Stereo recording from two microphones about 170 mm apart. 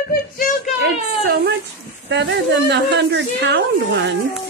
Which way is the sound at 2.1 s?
90° right.